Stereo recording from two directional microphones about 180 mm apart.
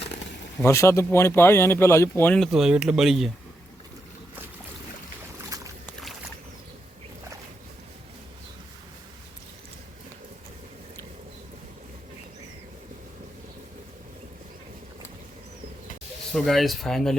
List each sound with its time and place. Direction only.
0.6 s speech: 15° left (ahead or behind); by 3.2 s centre (ahead or behind)
5.5 s boat: 20° right (ahead or behind)
5.8 s a sound: centre (ahead or behind)
16.3 s speech: centre (ahead or behind)